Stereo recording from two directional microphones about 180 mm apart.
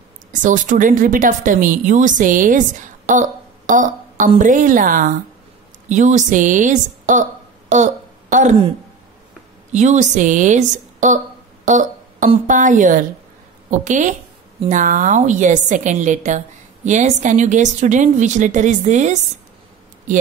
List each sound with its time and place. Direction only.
0.3 s speech: 45° right (ahead or behind)
7.7 s a sound: 40° right (ahead or behind)
9.7 s speech: 40° right (ahead or behind)
11.6 s music: 45° right (ahead or behind)
12.4 s speech: 45° right (ahead or behind)